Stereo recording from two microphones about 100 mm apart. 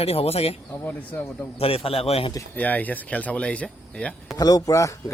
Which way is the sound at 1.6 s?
70° left (ahead or behind).